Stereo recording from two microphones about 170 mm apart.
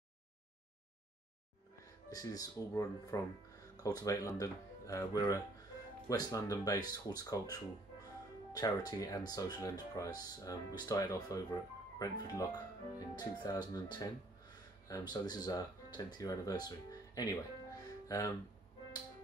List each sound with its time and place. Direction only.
2.0 s speech: 20° left (ahead or behind)